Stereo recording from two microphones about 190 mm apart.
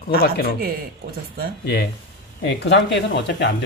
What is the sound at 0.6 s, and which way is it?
Speech, 55° right (ahead or behind).